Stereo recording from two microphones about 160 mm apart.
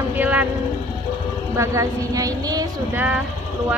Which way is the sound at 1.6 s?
20° right (ahead or behind).